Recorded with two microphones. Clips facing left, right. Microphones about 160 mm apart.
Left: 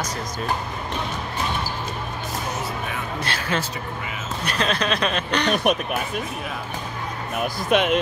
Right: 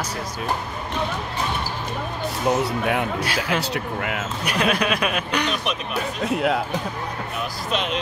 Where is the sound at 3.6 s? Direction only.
70° right (ahead or behind).